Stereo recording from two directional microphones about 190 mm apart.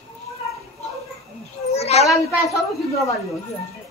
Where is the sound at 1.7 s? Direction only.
35° left (ahead or behind).